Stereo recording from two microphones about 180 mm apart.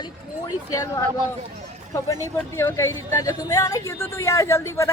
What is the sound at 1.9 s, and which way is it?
Speech, 20° left (ahead or behind).